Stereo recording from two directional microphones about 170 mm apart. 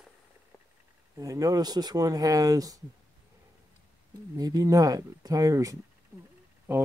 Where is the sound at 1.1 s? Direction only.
20° right (ahead or behind).